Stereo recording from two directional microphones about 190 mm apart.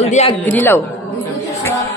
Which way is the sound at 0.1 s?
30° left (ahead or behind).